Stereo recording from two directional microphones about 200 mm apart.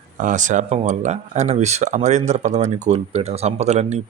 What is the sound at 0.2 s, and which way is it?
Speech, 40° right (ahead or behind).